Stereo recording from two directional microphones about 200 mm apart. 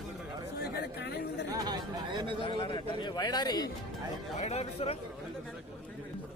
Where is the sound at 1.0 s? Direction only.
55° left (ahead or behind).